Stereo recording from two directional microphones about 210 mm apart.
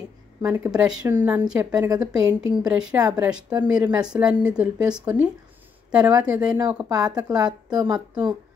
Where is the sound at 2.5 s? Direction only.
5° right (ahead or behind).